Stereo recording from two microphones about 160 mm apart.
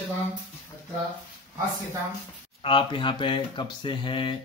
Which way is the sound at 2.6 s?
30° left (ahead or behind).